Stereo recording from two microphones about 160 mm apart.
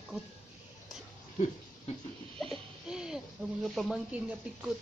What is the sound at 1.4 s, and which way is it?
Speech, 50° left (ahead or behind).